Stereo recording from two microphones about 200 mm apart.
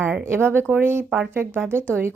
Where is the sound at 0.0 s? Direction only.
10° right (ahead or behind).